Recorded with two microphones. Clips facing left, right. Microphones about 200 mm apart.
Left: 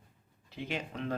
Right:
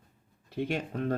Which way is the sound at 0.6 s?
50° right (ahead or behind).